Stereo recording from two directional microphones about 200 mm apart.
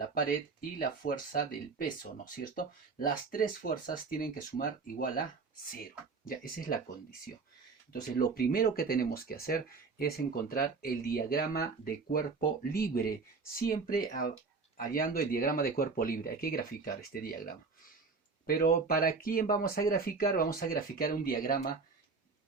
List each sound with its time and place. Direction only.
0.8 s speech: 45° left (ahead or behind)
3.3 s speech: 45° left (ahead or behind)
6.2 s speech: 45° left (ahead or behind)
8.1 s speech: 50° left (ahead or behind)